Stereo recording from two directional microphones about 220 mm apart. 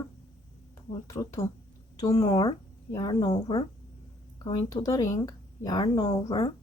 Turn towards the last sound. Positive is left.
turn(degrees=20)  # may be behind; listen again after turning